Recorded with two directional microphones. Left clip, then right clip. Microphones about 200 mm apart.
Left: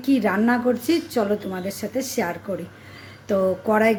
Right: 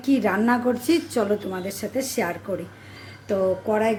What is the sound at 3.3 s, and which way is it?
Speech, 15° left (ahead or behind).